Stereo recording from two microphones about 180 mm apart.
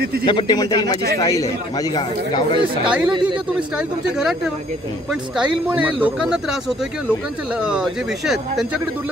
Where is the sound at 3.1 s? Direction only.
25° right (ahead or behind).